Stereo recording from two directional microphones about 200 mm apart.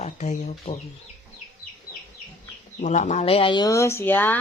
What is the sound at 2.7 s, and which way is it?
Speech, 35° left (ahead or behind).